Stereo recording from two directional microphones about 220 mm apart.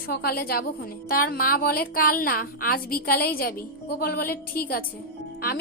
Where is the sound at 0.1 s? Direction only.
45° left (ahead or behind).